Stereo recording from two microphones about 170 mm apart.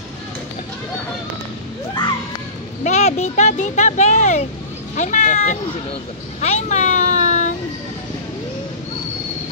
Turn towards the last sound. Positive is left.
turn(degrees=45)  # may be behind; listen again after turning